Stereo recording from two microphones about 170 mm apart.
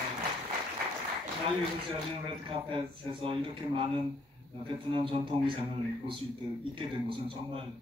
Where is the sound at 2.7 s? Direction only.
30° right (ahead or behind).